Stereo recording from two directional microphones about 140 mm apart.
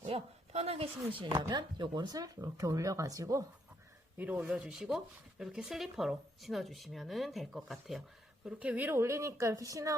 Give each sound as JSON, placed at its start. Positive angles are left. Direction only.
{"t": 0.0, "sound": "a sound", "side_deg": -45}
{"t": 1.2, "sound": "speech", "side_deg": -35}
{"t": 4.2, "sound": "speech", "side_deg": -10}